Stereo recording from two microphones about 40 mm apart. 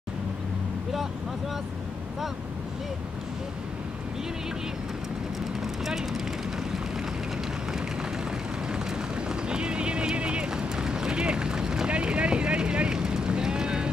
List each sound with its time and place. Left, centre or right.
5.6 s vehicle: centre
9.3 s clip-clop: right
11.9 s boat: right